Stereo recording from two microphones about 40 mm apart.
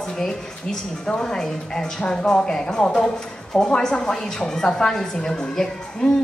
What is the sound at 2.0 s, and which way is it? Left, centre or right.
Speech, left.